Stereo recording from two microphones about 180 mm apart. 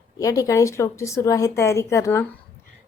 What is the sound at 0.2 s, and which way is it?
A woman's voice, 20° left (ahead or behind).